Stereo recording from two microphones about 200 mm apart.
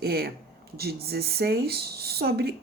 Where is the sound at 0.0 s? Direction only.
50° right (ahead or behind).